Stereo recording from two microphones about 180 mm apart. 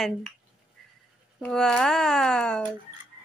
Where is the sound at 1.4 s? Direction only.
5° left (ahead or behind).